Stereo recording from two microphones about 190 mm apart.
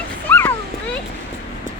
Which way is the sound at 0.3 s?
10° left (ahead or behind).